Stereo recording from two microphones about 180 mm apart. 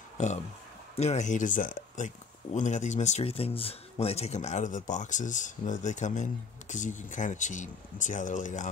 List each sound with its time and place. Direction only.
0.2 s speech: 40° left (ahead or behind)